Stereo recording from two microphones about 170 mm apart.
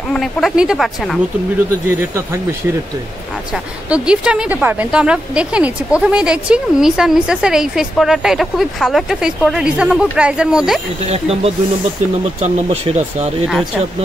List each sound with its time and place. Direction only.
0.1 s speech: centre (ahead or behind)
1.9 s speech: 15° right (ahead or behind)
3.9 s speech: 5° right (ahead or behind)
11.1 s speech: 35° right (ahead or behind)